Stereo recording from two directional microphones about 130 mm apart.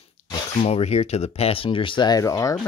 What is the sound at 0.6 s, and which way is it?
Speech, 55° left (ahead or behind).